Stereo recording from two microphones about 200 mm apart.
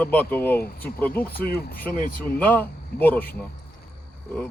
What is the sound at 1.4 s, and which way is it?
Speech, 50° left (ahead or behind).